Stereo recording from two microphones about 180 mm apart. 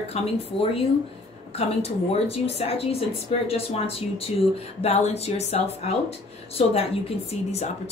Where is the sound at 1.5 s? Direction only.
35° left (ahead or behind).